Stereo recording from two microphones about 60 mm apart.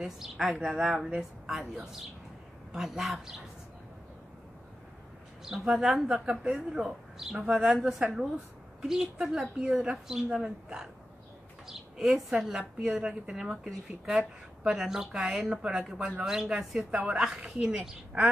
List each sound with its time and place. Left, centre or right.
0.0 s a woman's voice: centre
5.4 s a woman's voice: centre